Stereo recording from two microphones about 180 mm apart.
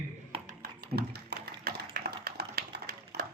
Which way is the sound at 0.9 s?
65° right (ahead or behind).